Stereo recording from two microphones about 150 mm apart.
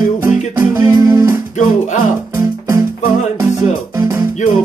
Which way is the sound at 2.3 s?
20° right (ahead or behind).